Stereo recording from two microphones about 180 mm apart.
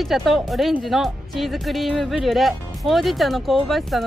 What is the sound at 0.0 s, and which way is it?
Speech, centre (ahead or behind).